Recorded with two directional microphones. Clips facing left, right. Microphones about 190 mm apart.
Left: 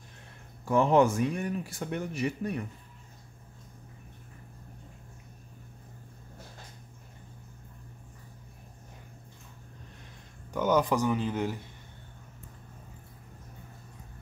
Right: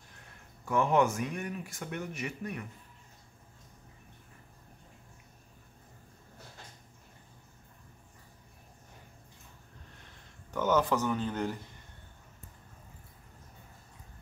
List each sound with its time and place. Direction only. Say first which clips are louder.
0.7 s speech: left 4 dB; 30° left (ahead or behind)
10.5 s speech: left 2 dB; 15° left (ahead or behind)